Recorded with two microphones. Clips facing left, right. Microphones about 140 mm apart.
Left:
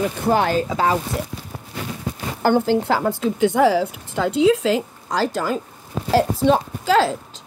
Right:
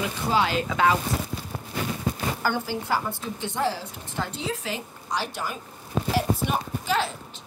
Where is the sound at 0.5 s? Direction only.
35° left (ahead or behind).